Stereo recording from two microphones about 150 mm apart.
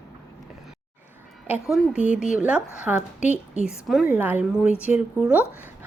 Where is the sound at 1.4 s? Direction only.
5° right (ahead or behind).